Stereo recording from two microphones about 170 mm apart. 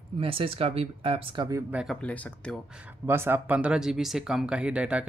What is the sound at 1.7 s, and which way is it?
Speech, centre (ahead or behind).